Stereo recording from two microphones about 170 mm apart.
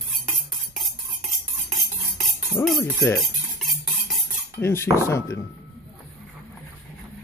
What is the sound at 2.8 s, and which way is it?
Speech, 15° left (ahead or behind).